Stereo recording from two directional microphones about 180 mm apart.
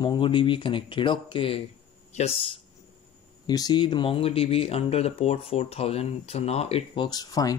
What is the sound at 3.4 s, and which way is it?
Speech, 20° left (ahead or behind).